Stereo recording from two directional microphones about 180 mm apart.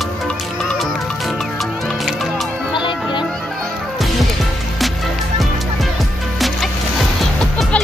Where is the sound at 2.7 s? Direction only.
25° left (ahead or behind).